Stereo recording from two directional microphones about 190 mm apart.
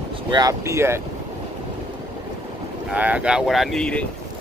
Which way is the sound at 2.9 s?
5° right (ahead or behind).